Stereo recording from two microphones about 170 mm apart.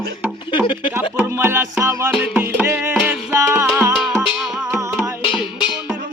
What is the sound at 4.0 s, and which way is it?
Music, centre (ahead or behind).